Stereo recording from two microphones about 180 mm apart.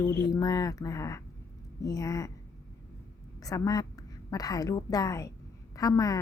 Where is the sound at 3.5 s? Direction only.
20° left (ahead or behind).